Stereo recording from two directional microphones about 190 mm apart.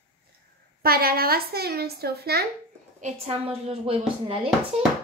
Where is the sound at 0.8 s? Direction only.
50° right (ahead or behind).